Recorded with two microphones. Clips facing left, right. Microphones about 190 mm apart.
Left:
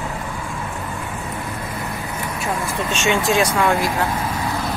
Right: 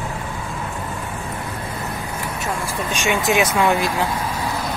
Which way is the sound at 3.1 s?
20° right (ahead or behind).